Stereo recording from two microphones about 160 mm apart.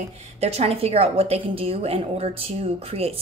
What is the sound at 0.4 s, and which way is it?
A woman's voice, 40° right (ahead or behind).